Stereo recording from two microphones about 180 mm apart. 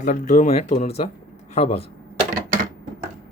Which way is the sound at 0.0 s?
45° left (ahead or behind).